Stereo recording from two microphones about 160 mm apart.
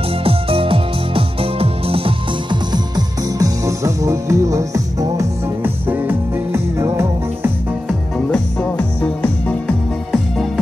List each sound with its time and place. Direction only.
0.2 s music: 35° right (ahead or behind); by 7.5 s 15° right (ahead or behind)
8.3 s music: 5° left (ahead or behind)